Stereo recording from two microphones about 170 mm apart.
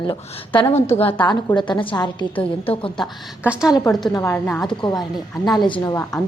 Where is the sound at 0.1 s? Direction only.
30° left (ahead or behind).